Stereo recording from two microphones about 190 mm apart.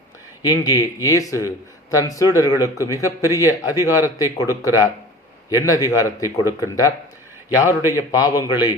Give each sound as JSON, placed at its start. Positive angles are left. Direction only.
{"t": 0.4, "sound": "a man's voice", "side_deg": 20}
{"t": 3.7, "sound": "a man's voice", "side_deg": -10}
{"t": 4.0, "sound": "a man's voice", "side_deg": 15}
{"t": 7.8, "sound": "a man's voice", "side_deg": -15}
{"t": 8.1, "sound": "a man's voice", "side_deg": 20}